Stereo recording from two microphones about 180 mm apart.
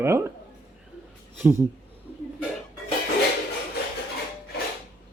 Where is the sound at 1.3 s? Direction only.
10° right (ahead or behind).